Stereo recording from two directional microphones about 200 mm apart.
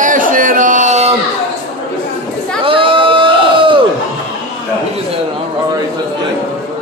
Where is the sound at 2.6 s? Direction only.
25° right (ahead or behind).